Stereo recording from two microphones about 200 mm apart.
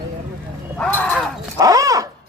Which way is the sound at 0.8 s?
10° left (ahead or behind).